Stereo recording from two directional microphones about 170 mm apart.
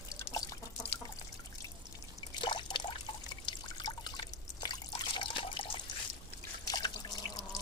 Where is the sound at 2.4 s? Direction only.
25° left (ahead or behind).